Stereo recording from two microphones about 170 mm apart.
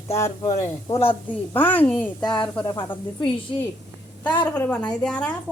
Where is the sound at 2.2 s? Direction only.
25° left (ahead or behind).